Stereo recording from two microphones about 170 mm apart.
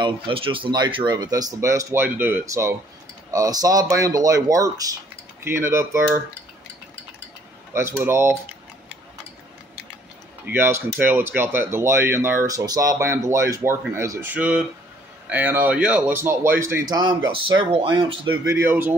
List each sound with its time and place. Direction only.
0.0 s speech: 30° right (ahead or behind); by 6.2 s 15° right (ahead or behind)
7.7 s speech: 15° right (ahead or behind)
10.4 s speech: 15° right (ahead or behind)
16.9 s speech: 25° right (ahead or behind)